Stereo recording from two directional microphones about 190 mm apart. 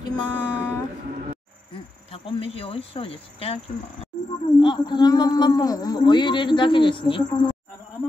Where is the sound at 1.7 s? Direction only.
30° left (ahead or behind).